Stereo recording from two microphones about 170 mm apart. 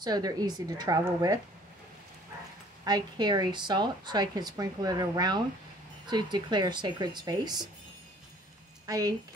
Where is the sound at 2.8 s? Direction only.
25° right (ahead or behind).